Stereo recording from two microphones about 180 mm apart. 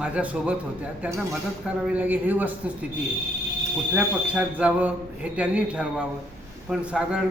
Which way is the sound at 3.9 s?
5° right (ahead or behind).